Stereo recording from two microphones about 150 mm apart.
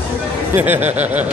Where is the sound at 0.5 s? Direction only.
15° right (ahead or behind).